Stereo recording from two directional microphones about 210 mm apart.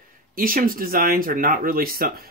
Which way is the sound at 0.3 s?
40° right (ahead or behind).